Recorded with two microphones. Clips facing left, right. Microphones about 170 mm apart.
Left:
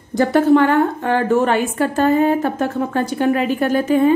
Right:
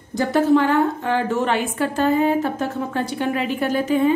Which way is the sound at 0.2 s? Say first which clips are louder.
Left 4 dB; 60° left (ahead or behind).